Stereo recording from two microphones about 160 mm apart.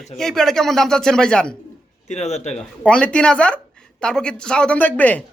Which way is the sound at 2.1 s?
45° left (ahead or behind).